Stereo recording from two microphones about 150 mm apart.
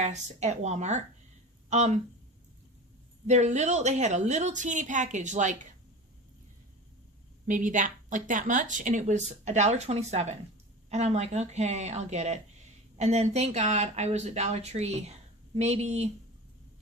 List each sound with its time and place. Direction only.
0.0 s a woman's voice: 50° right (ahead or behind)
3.2 s a woman's voice: 50° right (ahead or behind)
7.4 s a woman's voice: 55° right (ahead or behind)